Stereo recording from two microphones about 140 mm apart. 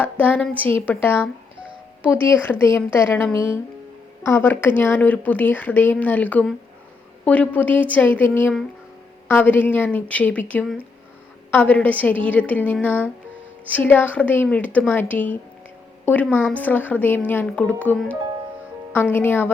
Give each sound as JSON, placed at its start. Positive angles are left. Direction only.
{"t": 0.0, "sound": "speech", "side_deg": 10}